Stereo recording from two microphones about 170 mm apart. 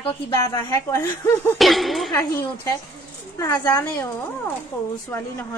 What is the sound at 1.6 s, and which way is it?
Speech, centre (ahead or behind).